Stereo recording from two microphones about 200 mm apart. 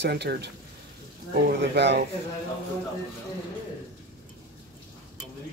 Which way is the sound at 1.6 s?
60° right (ahead or behind).